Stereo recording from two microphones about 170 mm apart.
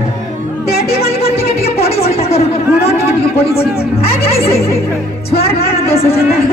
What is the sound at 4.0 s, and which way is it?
Music, 35° left (ahead or behind).